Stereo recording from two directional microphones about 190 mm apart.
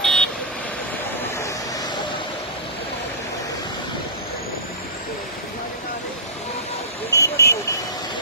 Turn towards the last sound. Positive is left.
turn(degrees=15)  # may be behind; listen again after turning